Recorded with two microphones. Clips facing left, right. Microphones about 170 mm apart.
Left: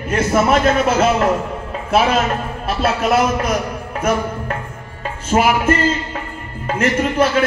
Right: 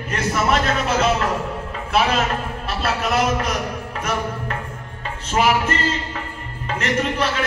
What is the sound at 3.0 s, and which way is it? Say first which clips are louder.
Speech: left 4 dB; 50° left (ahead or behind).